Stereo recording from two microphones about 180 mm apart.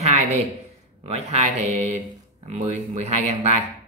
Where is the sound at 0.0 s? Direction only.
35° right (ahead or behind).